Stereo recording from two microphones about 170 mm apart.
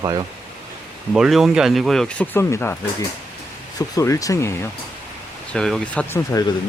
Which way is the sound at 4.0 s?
20° left (ahead or behind).